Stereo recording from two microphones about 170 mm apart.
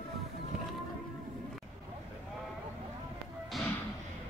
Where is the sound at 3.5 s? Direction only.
Centre (ahead or behind).